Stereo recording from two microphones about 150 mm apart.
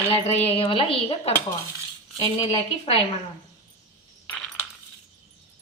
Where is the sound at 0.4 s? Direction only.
40° left (ahead or behind).